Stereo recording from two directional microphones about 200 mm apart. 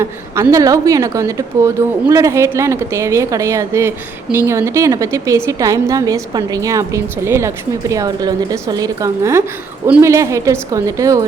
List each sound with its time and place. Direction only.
0.0 s a woman's voice: 15° right (ahead or behind)